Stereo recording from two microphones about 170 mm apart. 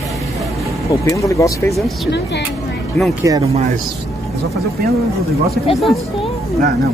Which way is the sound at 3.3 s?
20° right (ahead or behind).